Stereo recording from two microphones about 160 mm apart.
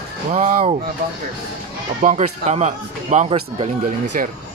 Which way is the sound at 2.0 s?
50° right (ahead or behind).